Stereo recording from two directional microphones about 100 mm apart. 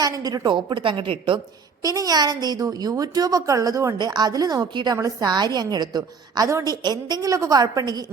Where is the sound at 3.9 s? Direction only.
45° right (ahead or behind).